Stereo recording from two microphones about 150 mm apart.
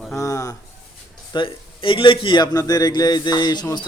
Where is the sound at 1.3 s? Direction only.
35° left (ahead or behind).